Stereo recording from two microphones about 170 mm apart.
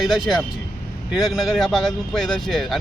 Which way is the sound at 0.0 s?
Centre (ahead or behind).